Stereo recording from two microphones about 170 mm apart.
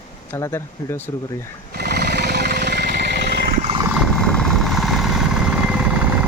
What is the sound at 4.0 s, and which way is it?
Vehicle, 5° left (ahead or behind).